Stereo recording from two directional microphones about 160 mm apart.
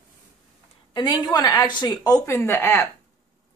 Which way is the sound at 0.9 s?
25° left (ahead or behind).